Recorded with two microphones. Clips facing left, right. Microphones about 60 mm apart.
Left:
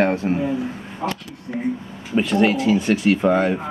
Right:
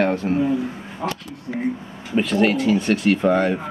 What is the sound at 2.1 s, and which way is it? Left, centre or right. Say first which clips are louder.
Speech: left 1 dB; centre.